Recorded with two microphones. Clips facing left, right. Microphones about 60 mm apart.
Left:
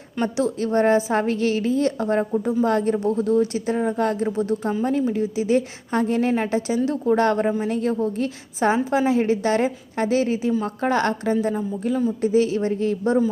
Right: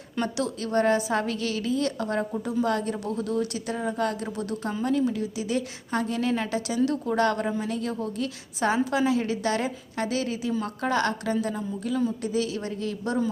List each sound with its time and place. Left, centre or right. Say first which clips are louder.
0.2 s a woman's voice: left 6 dB; left